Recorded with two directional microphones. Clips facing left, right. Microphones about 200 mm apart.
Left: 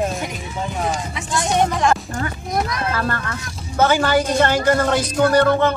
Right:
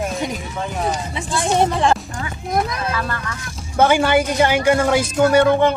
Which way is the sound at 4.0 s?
10° right (ahead or behind).